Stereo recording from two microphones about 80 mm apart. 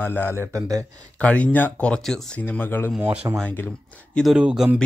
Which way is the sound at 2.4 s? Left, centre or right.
Left.